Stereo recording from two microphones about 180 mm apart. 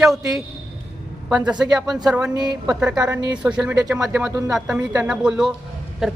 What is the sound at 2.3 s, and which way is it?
Speech, 20° right (ahead or behind).